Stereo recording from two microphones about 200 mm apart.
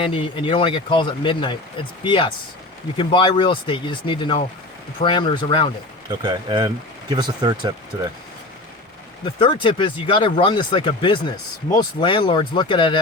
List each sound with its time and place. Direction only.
0.0 s speech: 25° left (ahead or behind)
6.1 s speech: 20° right (ahead or behind)
9.2 s speech: 25° left (ahead or behind)